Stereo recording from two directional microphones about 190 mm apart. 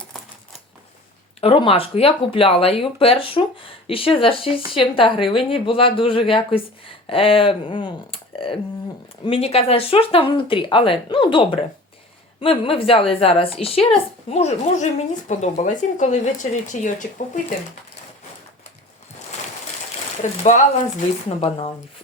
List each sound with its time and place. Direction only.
1.4 s speech: 30° left (ahead or behind)
19.3 s a sound: 35° left (ahead or behind)
20.2 s speech: 40° left (ahead or behind)